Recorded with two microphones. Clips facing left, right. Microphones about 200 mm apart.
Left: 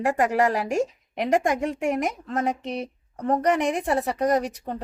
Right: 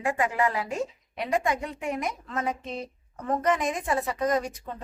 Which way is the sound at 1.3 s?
45° left (ahead or behind).